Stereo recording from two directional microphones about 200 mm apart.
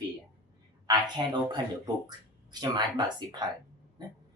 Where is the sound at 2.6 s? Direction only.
20° right (ahead or behind).